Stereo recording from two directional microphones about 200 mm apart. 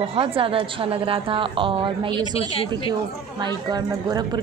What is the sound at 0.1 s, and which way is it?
Speech, 25° right (ahead or behind).